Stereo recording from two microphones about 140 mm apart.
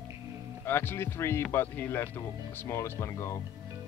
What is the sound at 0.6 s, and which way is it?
Speech, 15° left (ahead or behind).